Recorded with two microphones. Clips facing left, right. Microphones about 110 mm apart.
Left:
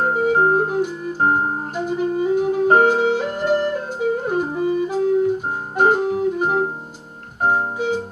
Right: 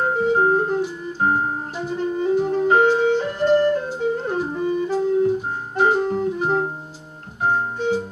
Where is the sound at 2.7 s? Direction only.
45° left (ahead or behind).